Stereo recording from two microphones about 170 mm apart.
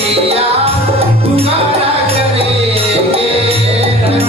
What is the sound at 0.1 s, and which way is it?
Music, 35° right (ahead or behind).